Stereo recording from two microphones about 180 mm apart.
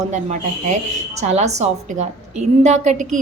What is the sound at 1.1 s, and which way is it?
A woman's voice, 40° right (ahead or behind).